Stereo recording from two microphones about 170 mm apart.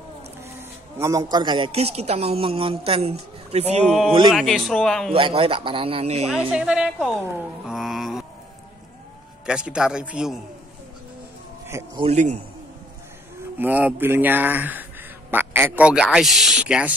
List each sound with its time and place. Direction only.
0.6 s a man's voice: 15° right (ahead or behind); by 3.8 s 40° right (ahead or behind)
4.3 s a man's voice: centre (ahead or behind)
5.1 s a man's voice: 35° right (ahead or behind)
6.3 s a man's voice: 5° right (ahead or behind)
7.6 s mantra: centre (ahead or behind)
9.5 s a man's voice: 5° right (ahead or behind)
12.0 s a man's voice: 40° right (ahead or behind)
13.6 s a man's voice: 10° right (ahead or behind)